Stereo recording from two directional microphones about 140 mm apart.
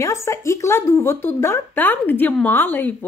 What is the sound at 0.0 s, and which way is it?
Speech, 20° left (ahead or behind).